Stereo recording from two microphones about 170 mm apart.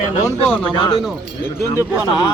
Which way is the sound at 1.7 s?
25° left (ahead or behind).